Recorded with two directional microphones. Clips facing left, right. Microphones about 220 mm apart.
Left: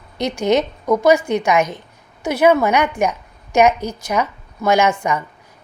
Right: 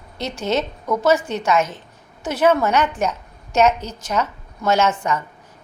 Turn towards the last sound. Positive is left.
turn(degrees=15)  # may be behind; listen again after turning